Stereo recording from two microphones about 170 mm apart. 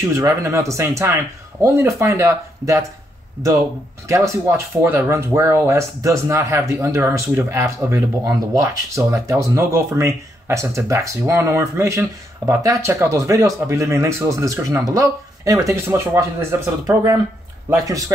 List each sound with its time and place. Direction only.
0.1 s speech: 15° right (ahead or behind)
4.1 s a man's voice: 15° right (ahead or behind)